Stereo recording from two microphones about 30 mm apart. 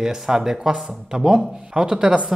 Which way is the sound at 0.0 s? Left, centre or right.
Centre.